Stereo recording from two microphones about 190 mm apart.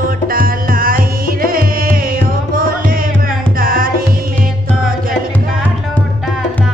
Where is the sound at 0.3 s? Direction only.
50° right (ahead or behind).